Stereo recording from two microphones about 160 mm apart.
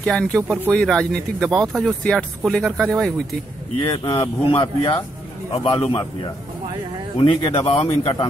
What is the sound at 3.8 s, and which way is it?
A man's voice, 30° left (ahead or behind).